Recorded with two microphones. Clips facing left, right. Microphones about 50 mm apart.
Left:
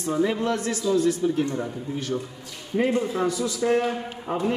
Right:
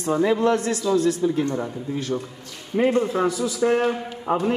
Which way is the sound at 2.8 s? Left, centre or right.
Right.